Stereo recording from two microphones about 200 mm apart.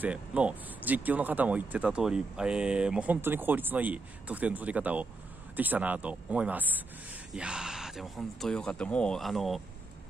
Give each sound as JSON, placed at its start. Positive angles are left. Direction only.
{"t": 0.0, "sound": "speech", "side_deg": -5}